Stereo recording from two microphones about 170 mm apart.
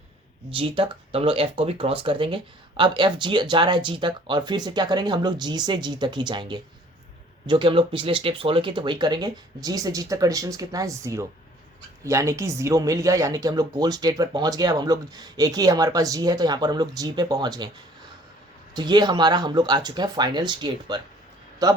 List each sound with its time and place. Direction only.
0.5 s speech: 30° right (ahead or behind)
18.7 s speech: 25° right (ahead or behind)